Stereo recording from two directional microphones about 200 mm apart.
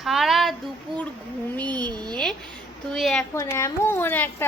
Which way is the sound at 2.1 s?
5° left (ahead or behind).